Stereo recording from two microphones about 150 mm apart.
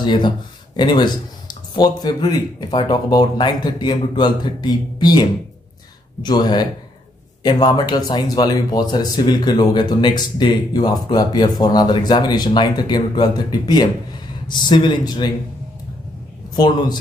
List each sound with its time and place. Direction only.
0.0 s a man's voice: 30° left (ahead or behind)